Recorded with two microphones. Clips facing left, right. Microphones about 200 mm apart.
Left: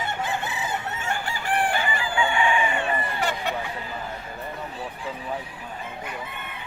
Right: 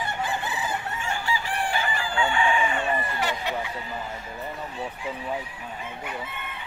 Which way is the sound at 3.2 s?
50° left (ahead or behind).